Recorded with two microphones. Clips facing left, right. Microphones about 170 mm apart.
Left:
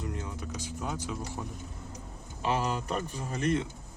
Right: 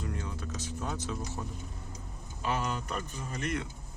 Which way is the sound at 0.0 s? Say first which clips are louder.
Left 1 dB; 20° left (ahead or behind).